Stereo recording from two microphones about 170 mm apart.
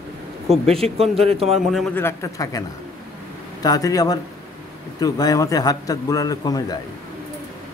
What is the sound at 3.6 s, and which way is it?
A man's voice, 20° left (ahead or behind).